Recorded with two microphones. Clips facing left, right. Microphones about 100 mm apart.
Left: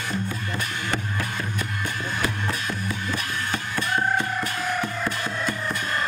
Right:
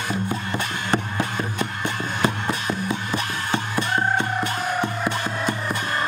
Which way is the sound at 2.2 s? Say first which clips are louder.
Right 6 dB; 20° right (ahead or behind).